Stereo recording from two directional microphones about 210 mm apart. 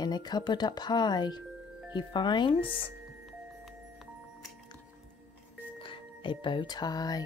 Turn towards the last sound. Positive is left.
turn(degrees=20)  # may be behind; listen again after turning